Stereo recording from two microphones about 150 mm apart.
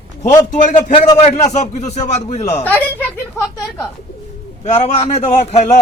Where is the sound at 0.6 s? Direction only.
55° left (ahead or behind).